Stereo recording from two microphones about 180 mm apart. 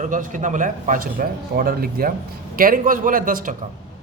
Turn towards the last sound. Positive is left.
turn(degrees=-50)  # may be behind; listen again after turning